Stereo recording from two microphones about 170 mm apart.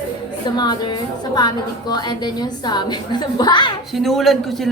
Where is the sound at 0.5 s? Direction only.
25° left (ahead or behind).